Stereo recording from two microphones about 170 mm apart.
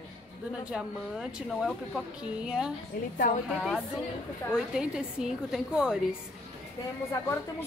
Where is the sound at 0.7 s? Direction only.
5° right (ahead or behind).